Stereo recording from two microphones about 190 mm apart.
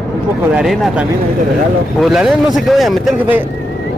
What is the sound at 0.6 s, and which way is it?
A man's voice, 5° right (ahead or behind).